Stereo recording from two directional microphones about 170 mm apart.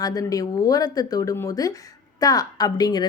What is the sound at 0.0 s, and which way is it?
Speech, 20° left (ahead or behind).